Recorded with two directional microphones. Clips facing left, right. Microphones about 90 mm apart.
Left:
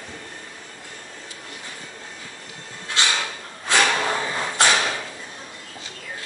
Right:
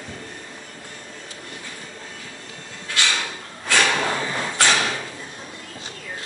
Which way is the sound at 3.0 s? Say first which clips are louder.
Left 1 dB; 25° left (ahead or behind).